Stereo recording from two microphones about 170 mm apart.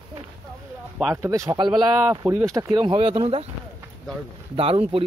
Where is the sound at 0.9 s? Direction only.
10° right (ahead or behind); by 3.4 s 35° right (ahead or behind).